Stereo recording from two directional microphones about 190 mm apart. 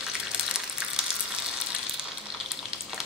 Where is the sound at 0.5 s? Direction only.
5° right (ahead or behind).